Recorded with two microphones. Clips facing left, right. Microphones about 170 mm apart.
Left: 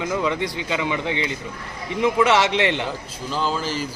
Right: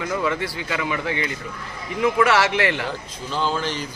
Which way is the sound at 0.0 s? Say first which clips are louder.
Left 1 dB; 20° left (ahead or behind).